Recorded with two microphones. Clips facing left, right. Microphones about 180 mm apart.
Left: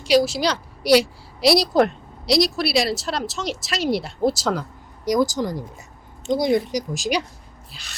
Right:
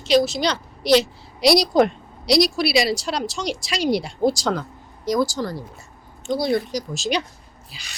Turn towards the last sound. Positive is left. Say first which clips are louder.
# even
turn(degrees=0)  # may be behind; listen again after turning